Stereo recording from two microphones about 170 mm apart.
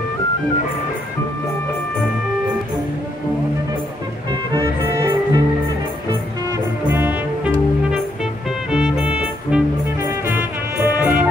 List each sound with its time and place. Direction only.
4.5 s music: 15° right (ahead or behind)
6.9 s music: 10° right (ahead or behind)
8.6 s music: 5° right (ahead or behind)